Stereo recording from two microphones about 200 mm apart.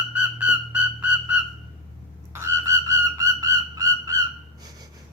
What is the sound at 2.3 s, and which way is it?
Frog, 15° right (ahead or behind).